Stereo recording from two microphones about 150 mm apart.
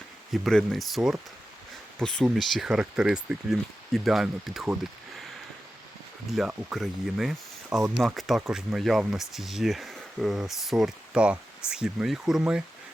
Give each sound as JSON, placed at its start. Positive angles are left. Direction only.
{"t": 0.3, "sound": "speech", "side_deg": 0}
{"t": 6.3, "sound": "speech", "side_deg": -5}